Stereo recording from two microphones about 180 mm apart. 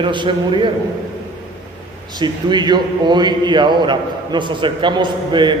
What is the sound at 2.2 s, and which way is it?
A man's voice, 25° right (ahead or behind).